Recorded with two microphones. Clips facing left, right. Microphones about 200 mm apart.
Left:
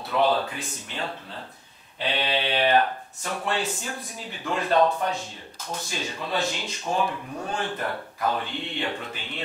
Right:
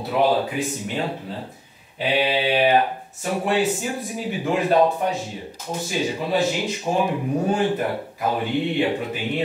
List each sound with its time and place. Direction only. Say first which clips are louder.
0.1 s speech: right 3 dB; 15° right (ahead or behind)